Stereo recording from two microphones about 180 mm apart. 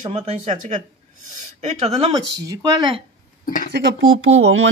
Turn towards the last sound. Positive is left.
turn(degrees=-90)